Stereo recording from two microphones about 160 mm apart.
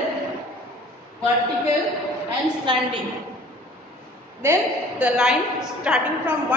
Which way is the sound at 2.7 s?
30° right (ahead or behind).